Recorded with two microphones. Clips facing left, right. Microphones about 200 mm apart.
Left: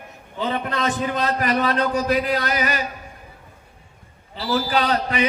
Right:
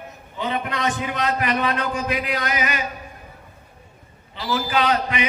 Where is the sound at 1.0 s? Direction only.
40° left (ahead or behind).